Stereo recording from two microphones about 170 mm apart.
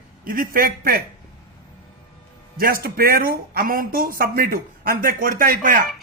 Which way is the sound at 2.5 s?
60° right (ahead or behind).